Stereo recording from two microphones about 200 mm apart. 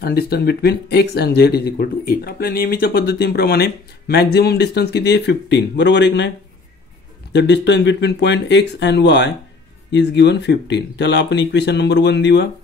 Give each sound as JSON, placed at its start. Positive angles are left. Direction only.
{"t": 0.0, "sound": "speech", "side_deg": 50}
{"t": 7.3, "sound": "speech", "side_deg": 60}